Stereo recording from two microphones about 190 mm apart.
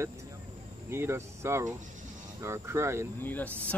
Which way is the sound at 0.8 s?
15° right (ahead or behind).